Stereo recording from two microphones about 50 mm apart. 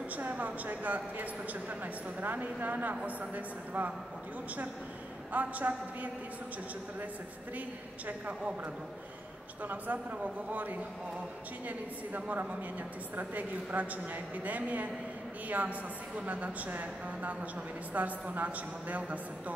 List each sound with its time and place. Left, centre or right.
0.1 s a woman's voice: right
5.3 s a woman's voice: right
8.1 s a man's voice: right
9.6 s a woman's voice: right